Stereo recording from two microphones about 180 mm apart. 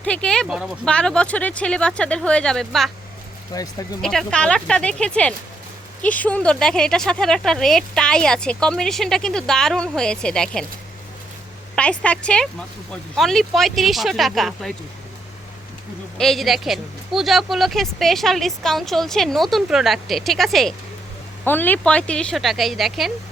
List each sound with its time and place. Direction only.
0.0 s speech: 5° left (ahead or behind)
3.5 s speech: 20° left (ahead or behind)
4.0 s speech: 5° left (ahead or behind)
11.7 s speech: 5° left (ahead or behind)
16.1 s speech: centre (ahead or behind)